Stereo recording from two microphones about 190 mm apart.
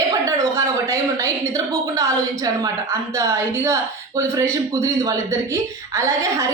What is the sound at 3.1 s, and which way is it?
Speech, 15° right (ahead or behind).